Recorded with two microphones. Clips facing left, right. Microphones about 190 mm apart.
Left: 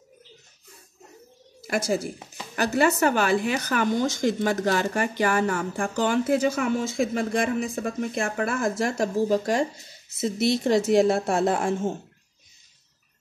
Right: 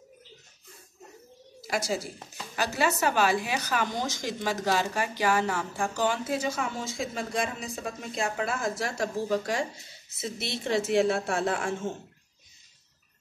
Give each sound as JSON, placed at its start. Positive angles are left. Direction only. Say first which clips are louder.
{"t": 1.7, "sound": "a woman's voice", "louder": "left 5 dB", "side_deg": 55}